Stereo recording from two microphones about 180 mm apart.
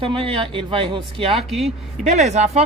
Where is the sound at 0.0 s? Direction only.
30° right (ahead or behind).